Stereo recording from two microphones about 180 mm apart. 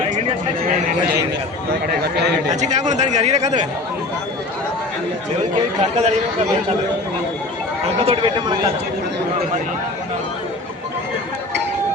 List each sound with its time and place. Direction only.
2.6 s speech: 40° right (ahead or behind)
5.8 s speech: 40° right (ahead or behind)
8.0 s speech: 30° right (ahead or behind)